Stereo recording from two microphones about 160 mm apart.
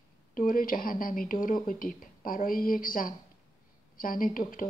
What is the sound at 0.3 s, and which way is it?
Speech, 60° left (ahead or behind).